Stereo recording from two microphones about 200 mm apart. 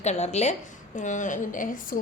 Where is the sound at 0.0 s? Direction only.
35° left (ahead or behind).